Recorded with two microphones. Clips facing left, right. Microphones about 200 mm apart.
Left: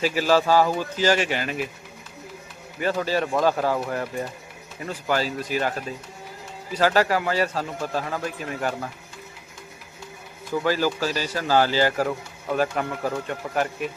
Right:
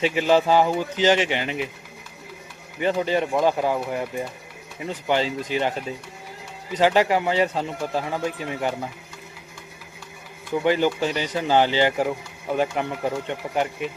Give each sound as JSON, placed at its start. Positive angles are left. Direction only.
{"t": 0.0, "sound": "speech", "side_deg": -20}
{"t": 2.8, "sound": "speech", "side_deg": -20}
{"t": 10.6, "sound": "speech", "side_deg": -20}